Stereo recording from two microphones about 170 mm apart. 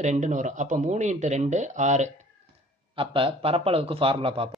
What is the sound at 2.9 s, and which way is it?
Speech, 30° right (ahead or behind).